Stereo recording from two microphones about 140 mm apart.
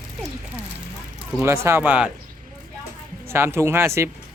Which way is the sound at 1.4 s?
20° right (ahead or behind).